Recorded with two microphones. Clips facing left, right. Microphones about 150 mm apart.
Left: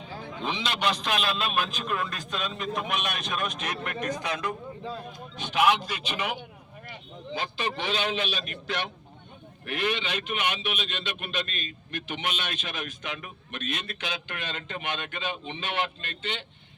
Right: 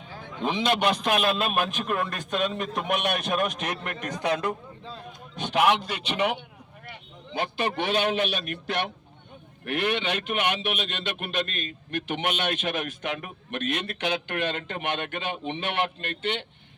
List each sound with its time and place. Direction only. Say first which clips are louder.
0.4 s a man's voice: right 5 dB; 50° right (ahead or behind)